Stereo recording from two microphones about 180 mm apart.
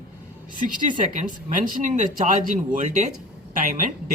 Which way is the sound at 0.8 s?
45° right (ahead or behind).